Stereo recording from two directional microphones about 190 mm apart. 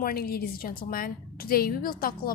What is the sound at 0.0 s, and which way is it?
A woman's voice, 50° left (ahead or behind).